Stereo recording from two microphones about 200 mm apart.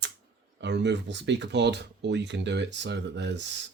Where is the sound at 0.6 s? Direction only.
60° right (ahead or behind).